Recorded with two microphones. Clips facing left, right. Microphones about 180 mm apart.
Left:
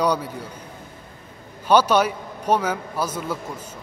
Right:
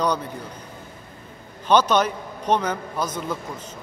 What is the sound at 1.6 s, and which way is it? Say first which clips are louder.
A man's voice: left 1 dB; 10° left (ahead or behind).